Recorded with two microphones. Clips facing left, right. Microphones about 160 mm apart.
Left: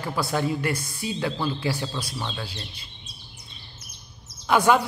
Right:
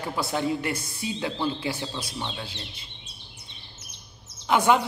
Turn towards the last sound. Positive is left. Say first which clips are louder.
# left 1 dB
turn(degrees=-20)  # may be behind; listen again after turning